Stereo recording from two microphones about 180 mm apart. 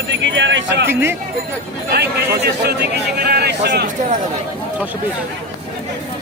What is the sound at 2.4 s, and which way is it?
A man's voice, 65° right (ahead or behind).